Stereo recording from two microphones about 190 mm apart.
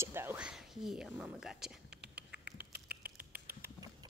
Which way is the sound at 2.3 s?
60° right (ahead or behind).